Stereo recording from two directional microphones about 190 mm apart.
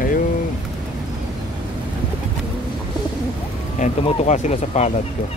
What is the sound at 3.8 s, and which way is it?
Speech, 35° left (ahead or behind).